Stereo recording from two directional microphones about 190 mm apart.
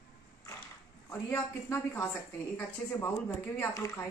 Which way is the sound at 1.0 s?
15° left (ahead or behind).